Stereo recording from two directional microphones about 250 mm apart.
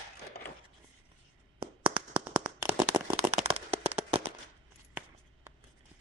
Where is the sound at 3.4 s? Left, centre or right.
Right.